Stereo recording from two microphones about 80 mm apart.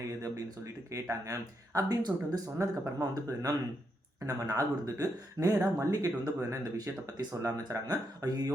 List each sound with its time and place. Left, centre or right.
0.1 s speech: right